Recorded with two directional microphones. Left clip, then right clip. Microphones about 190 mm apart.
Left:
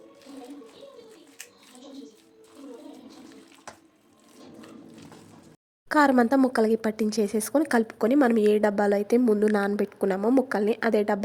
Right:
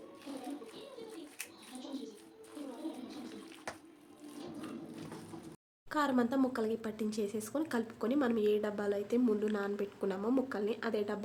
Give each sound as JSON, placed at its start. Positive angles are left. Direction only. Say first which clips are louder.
{"t": 5.9, "sound": "a woman's voice", "louder": "left 12 dB", "side_deg": 40}